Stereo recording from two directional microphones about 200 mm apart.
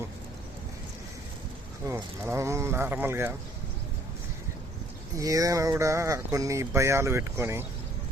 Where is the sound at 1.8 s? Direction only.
15° right (ahead or behind).